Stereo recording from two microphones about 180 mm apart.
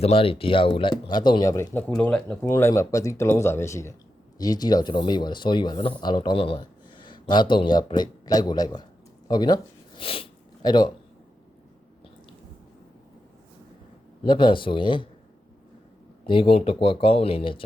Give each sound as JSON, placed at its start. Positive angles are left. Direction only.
{"t": 0.0, "sound": "speech", "side_deg": 30}
{"t": 10.0, "sound": "a sound", "side_deg": 30}
{"t": 14.3, "sound": "speech", "side_deg": 25}
{"t": 16.2, "sound": "speech", "side_deg": 30}